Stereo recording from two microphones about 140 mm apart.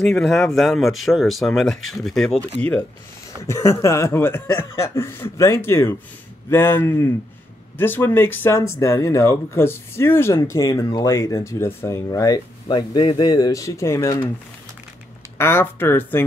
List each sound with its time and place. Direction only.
0.0 s speech: 5° left (ahead or behind)
3.4 s speech: 20° left (ahead or behind)
15.3 s speech: 15° left (ahead or behind)